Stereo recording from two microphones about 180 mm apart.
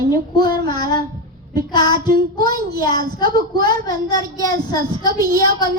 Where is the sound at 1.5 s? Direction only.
25° left (ahead or behind).